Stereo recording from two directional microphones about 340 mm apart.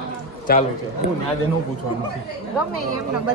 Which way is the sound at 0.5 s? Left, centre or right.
Left.